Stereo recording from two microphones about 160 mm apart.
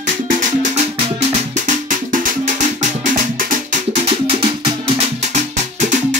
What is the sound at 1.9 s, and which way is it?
Music, 55° right (ahead or behind).